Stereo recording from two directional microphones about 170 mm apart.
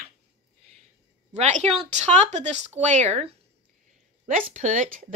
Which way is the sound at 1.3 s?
40° right (ahead or behind).